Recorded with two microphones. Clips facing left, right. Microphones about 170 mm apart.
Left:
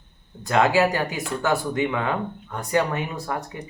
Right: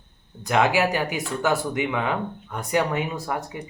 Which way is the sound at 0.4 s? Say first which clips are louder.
Left 2 dB; 15° right (ahead or behind).